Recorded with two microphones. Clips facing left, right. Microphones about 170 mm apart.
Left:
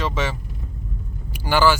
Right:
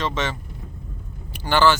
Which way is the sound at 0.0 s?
10° left (ahead or behind).